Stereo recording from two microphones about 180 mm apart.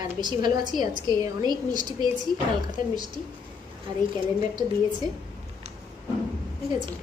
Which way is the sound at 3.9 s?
20° right (ahead or behind).